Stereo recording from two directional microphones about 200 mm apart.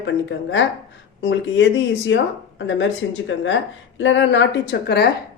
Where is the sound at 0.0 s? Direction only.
65° left (ahead or behind).